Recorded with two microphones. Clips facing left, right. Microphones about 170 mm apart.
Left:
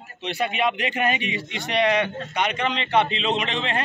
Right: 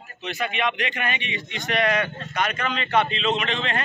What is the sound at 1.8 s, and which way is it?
Speech, 25° left (ahead or behind).